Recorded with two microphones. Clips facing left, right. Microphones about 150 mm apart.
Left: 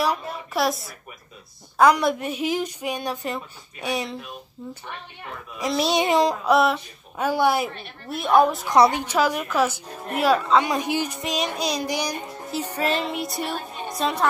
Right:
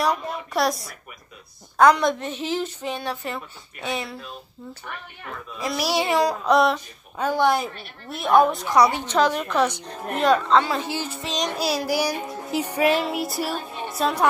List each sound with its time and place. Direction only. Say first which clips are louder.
0.0 s a woman's voice: right 1 dB; centre (ahead or behind); by 4.4 s 20° left (ahead or behind)
5.6 s a child's voice: left 2 dB; 20° left (ahead or behind)
6.4 s a woman's voice: even; 5° left (ahead or behind)
7.7 s child singing: left 3 dB; centre (ahead or behind)
8.6 s a child's voice: left 1 dB; 20° left (ahead or behind)
9.0 s a woman's voice: right 1 dB; 10° left (ahead or behind)
11.5 s child singing: right 2 dB; 5° right (ahead or behind)